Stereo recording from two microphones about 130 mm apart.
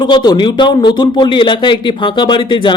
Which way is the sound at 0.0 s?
35° left (ahead or behind).